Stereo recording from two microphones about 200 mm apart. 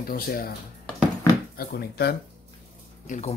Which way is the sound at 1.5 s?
50° left (ahead or behind).